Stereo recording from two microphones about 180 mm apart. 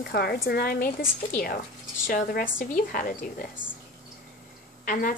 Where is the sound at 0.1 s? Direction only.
60° left (ahead or behind).